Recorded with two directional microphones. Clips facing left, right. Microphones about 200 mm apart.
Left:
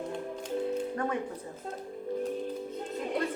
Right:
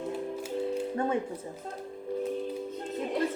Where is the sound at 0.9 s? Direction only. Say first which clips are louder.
Right 3 dB; 25° right (ahead or behind).